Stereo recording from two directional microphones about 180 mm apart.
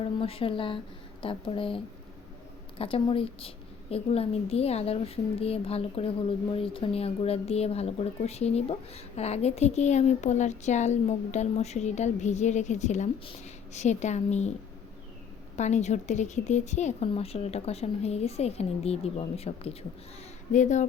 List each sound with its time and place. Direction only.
0.0 s speech: 30° left (ahead or behind)
15.5 s speech: 40° left (ahead or behind)